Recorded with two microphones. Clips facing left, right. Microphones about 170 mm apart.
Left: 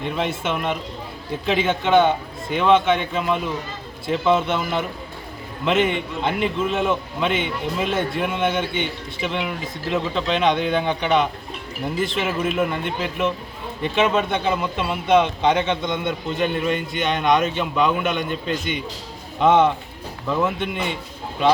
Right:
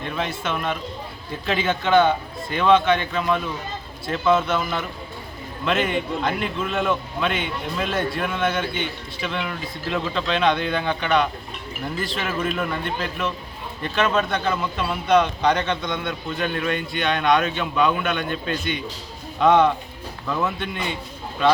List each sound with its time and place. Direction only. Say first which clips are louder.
0.0 s a man's voice: left 3 dB; 15° left (ahead or behind)